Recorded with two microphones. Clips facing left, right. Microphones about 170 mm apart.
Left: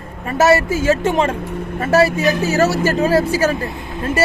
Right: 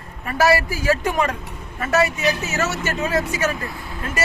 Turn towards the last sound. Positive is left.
turn(degrees=25)  # may be behind; listen again after turning